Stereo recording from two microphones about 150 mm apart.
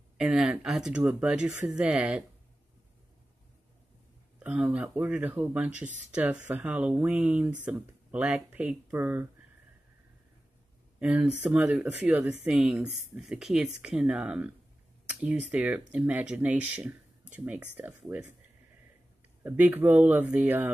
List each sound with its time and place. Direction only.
0.2 s speech: 5° right (ahead or behind)
4.4 s speech: 10° right (ahead or behind)
11.0 s speech: 5° right (ahead or behind)
19.4 s speech: 10° right (ahead or behind)